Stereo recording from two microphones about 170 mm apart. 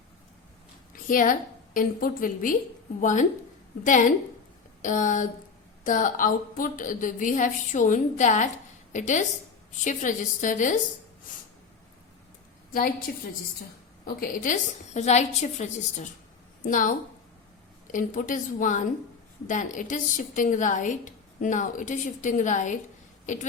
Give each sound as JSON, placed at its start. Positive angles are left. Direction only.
{"t": 1.0, "sound": "a woman's voice", "side_deg": 55}
{"t": 13.1, "sound": "a woman's voice", "side_deg": 60}